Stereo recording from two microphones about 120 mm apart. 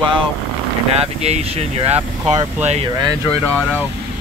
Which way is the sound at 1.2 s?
60° right (ahead or behind).